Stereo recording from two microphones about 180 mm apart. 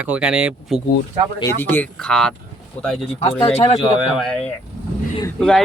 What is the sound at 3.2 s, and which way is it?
Speech, 35° left (ahead or behind).